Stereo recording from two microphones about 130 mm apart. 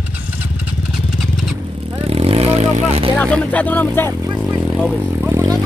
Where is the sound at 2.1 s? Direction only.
50° right (ahead or behind).